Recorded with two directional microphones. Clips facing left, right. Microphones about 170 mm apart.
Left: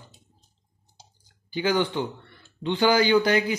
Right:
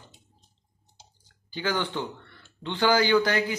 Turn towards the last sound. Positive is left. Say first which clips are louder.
# left 2 dB
turn(degrees=15)  # may be behind; listen again after turning